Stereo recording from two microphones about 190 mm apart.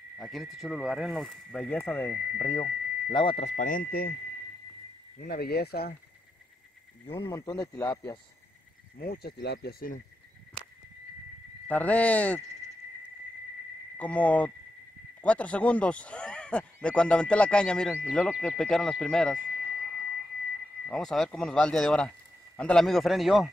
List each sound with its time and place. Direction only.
0.2 s speech: centre (ahead or behind); by 4.1 s 50° left (ahead or behind)
5.2 s speech: 55° left (ahead or behind)
7.1 s speech: 15° left (ahead or behind)
8.9 s speech: 55° left (ahead or behind)
11.6 s speech: 10° left (ahead or behind)
13.9 s speech: 5° left (ahead or behind)
20.9 s speech: centre (ahead or behind)